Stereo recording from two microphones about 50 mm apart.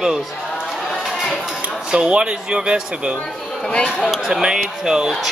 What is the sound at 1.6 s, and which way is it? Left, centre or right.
Speech, centre.